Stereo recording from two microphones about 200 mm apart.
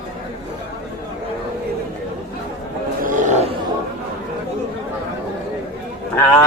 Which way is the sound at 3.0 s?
40° right (ahead or behind).